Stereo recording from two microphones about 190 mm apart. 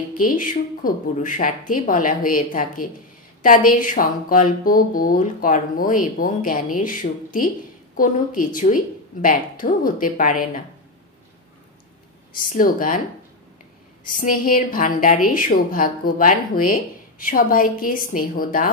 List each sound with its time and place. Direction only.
0.2 s speech: 45° left (ahead or behind)
12.3 s speech: 50° left (ahead or behind)
14.1 s speech: 45° left (ahead or behind)